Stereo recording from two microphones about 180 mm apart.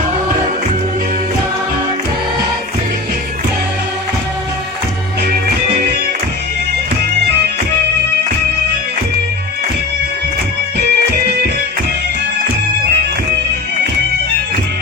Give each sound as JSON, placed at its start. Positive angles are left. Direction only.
{"t": 10.8, "sound": "music", "side_deg": -65}